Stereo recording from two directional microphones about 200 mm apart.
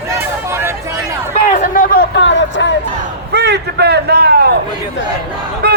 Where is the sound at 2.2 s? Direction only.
65° left (ahead or behind).